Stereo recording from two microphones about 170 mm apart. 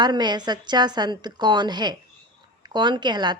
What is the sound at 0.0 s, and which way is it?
A woman's voice, 25° right (ahead or behind).